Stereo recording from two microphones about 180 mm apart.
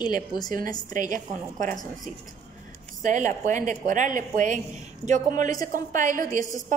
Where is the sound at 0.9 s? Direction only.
45° right (ahead or behind).